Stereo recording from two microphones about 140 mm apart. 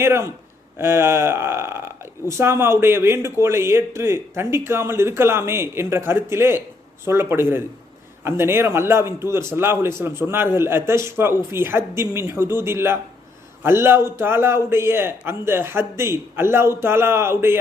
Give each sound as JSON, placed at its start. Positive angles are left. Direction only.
{"t": 0.0, "sound": "a man's voice", "side_deg": -20}